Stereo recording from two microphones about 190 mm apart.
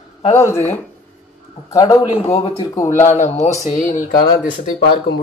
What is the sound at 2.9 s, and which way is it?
Speech, 40° left (ahead or behind).